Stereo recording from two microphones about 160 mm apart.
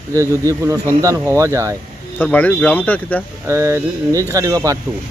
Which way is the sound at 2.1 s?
10° left (ahead or behind).